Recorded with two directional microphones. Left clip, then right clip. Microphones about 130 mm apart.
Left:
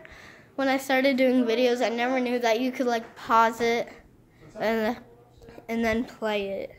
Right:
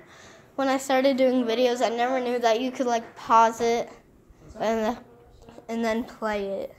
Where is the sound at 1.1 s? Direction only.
20° left (ahead or behind).